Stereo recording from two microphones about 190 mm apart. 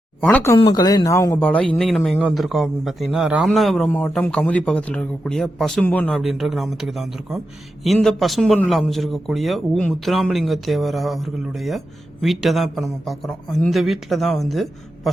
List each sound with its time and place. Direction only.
0.2 s speech: 5° left (ahead or behind)
0.6 s a man's voice: 20° left (ahead or behind); by 15.1 s centre (ahead or behind)